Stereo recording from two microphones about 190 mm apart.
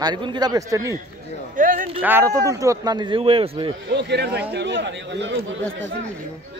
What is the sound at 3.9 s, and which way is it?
Speech, 65° right (ahead or behind).